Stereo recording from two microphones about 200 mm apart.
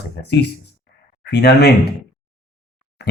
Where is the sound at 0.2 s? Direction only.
55° left (ahead or behind).